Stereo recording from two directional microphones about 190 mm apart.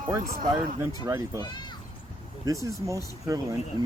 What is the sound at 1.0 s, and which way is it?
Speech, 20° right (ahead or behind).